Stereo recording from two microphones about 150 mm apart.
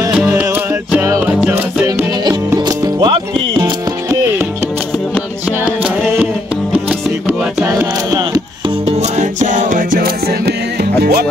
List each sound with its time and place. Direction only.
0.1 s music: 10° right (ahead or behind)
1.9 s music: 25° right (ahead or behind)
5.7 s music: 10° right (ahead or behind)
7.6 s music: 25° right (ahead or behind)
8.8 s music: 50° right (ahead or behind); by 11.2 s 90° right